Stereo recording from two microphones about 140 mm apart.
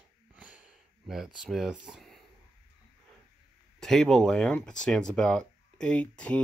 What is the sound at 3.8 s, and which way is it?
Speech, 5° left (ahead or behind).